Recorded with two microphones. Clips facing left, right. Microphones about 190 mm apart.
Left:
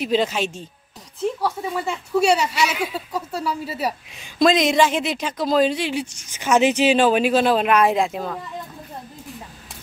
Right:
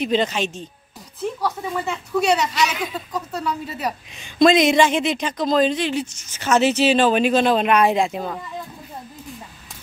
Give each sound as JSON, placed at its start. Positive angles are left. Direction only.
{"t": 0.0, "sound": "speech", "side_deg": 5}